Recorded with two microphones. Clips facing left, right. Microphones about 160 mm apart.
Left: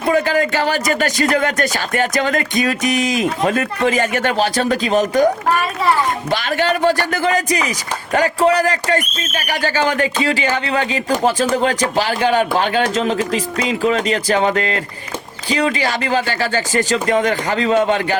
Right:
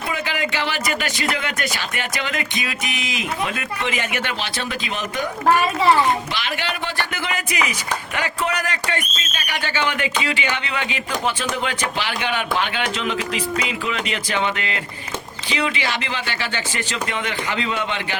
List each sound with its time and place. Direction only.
0.1 s speech: 45° left (ahead or behind)
6.3 s speech: 45° left (ahead or behind)